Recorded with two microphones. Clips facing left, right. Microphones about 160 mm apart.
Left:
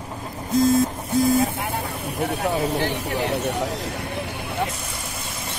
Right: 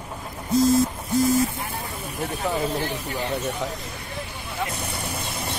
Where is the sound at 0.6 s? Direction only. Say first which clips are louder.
Left 1 dB; 55° left (ahead or behind).